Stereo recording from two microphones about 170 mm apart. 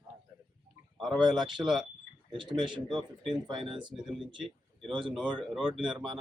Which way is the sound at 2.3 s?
30° right (ahead or behind).